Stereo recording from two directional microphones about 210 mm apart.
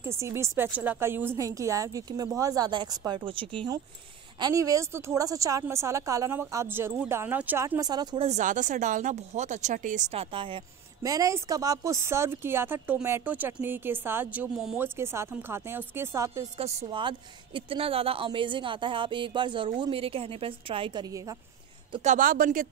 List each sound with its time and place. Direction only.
0.0 s a woman's voice: 10° right (ahead or behind)
8.3 s a woman's voice: 35° right (ahead or behind); by 16.4 s 10° right (ahead or behind)
16.5 s speech: 30° right (ahead or behind)
22.0 s speech: 40° right (ahead or behind)